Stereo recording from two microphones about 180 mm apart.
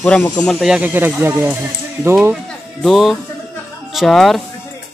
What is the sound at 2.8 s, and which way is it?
Speech, centre (ahead or behind).